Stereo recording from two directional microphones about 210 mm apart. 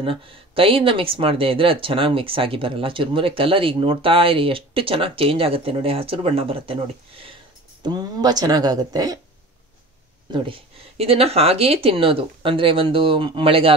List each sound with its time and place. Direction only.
0.0 s speech: 25° right (ahead or behind)
10.3 s speech: 25° right (ahead or behind)